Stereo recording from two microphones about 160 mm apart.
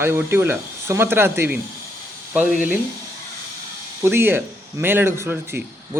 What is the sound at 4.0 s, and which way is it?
A man's voice, 15° right (ahead or behind).